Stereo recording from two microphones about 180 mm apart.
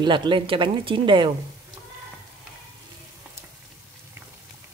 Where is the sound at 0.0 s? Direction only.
25° right (ahead or behind).